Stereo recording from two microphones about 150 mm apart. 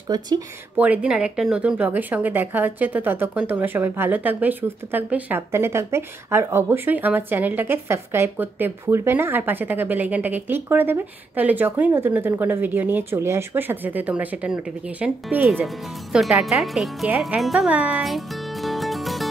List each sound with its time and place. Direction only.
0.7 s speech: 10° right (ahead or behind)
17.2 s music: centre (ahead or behind)